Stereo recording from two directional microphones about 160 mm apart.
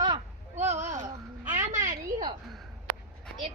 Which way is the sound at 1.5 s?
50° right (ahead or behind).